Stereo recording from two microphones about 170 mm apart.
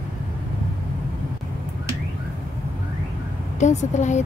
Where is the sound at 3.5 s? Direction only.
45° left (ahead or behind).